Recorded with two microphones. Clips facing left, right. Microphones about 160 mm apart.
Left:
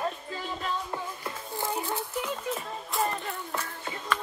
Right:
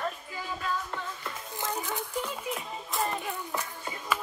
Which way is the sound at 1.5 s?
15° left (ahead or behind).